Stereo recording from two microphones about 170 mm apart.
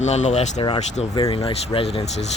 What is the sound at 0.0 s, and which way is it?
Speech, 40° left (ahead or behind).